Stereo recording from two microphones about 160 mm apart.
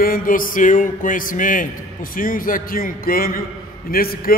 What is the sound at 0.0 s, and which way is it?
A man's voice, 60° left (ahead or behind).